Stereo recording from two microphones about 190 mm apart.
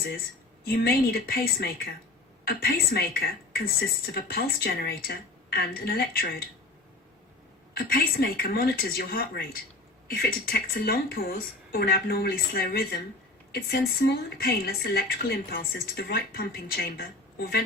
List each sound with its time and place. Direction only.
0.6 s a woman's voice: 55° left (ahead or behind)
7.7 s a woman's voice: 55° left (ahead or behind)